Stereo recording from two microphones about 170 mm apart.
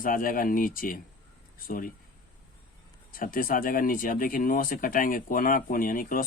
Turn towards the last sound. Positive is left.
turn(degrees=55)  # may be behind; listen again after turning